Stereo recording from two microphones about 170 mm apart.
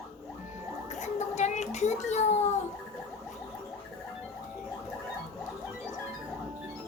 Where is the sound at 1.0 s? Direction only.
45° left (ahead or behind).